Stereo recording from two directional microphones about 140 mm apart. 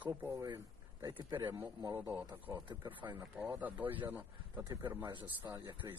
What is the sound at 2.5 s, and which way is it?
Speech, 30° right (ahead or behind).